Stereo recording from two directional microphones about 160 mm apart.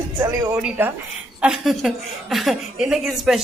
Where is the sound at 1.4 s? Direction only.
Centre (ahead or behind).